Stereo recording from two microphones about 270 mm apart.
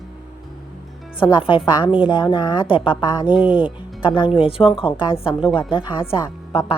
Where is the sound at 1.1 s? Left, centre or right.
Centre.